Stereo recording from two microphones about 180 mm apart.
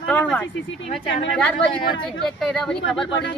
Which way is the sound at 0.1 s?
10° left (ahead or behind).